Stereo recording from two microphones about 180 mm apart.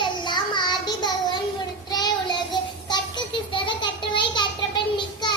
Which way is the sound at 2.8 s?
25° left (ahead or behind).